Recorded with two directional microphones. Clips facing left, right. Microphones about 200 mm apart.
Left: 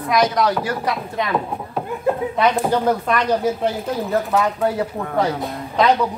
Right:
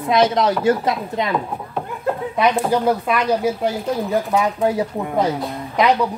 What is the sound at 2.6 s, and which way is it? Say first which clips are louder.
Speech: right 1 dB; 5° right (ahead or behind).